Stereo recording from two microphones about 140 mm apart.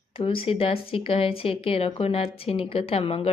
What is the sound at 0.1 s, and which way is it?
Speech, 40° left (ahead or behind).